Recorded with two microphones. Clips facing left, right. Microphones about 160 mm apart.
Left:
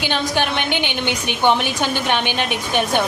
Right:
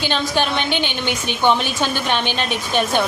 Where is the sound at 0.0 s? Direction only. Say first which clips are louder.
Even; 15° left (ahead or behind).